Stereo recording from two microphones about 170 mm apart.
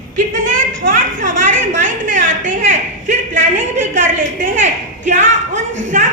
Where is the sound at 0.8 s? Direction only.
50° right (ahead or behind).